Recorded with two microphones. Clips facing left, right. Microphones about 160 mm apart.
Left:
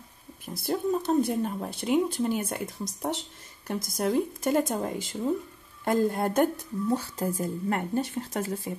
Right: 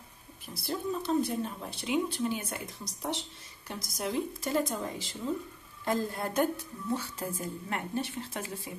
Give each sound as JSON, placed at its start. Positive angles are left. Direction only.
{"t": 0.6, "sound": "a woman's voice", "side_deg": 50}